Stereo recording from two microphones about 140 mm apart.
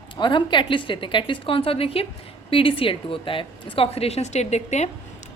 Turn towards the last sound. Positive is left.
turn(degrees=55)  # may be behind; listen again after turning